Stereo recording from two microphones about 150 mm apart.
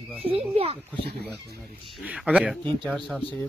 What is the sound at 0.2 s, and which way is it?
Speech, 40° right (ahead or behind).